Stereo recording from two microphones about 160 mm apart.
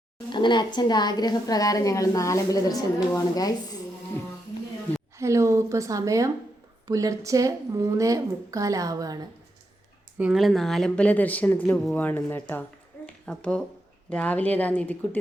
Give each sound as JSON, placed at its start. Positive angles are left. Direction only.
{"t": 0.3, "sound": "a woman's voice", "side_deg": 30}
{"t": 5.1, "sound": "a woman's voice", "side_deg": -20}
{"t": 10.2, "sound": "speech", "side_deg": -5}